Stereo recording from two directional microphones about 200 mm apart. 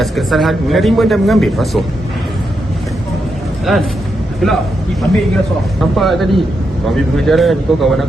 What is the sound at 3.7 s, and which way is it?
Speech, centre (ahead or behind).